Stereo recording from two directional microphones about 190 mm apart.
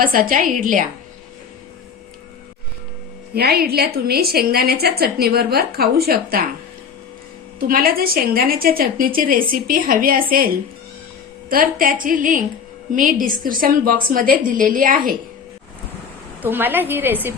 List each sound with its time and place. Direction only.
0.0 s a woman's voice: 50° right (ahead or behind)
3.3 s a woman's voice: 55° right (ahead or behind)
7.7 s a woman's voice: 50° right (ahead or behind)
16.4 s a woman's voice: 10° right (ahead or behind)